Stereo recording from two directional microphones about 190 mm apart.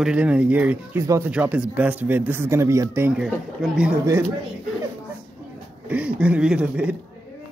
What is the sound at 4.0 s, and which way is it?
Speech, 15° right (ahead or behind).